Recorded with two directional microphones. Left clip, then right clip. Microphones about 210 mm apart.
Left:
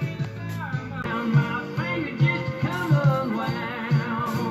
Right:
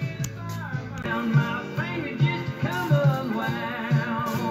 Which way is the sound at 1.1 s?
45° left (ahead or behind).